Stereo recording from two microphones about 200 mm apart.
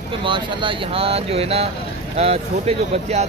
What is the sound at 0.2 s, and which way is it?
Speech, 25° right (ahead or behind).